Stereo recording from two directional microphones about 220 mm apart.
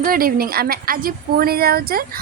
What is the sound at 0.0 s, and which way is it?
A woman's voice, 40° right (ahead or behind).